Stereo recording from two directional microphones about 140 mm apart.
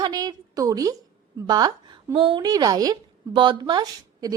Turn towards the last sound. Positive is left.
turn(degrees=-30)  # may be behind; listen again after turning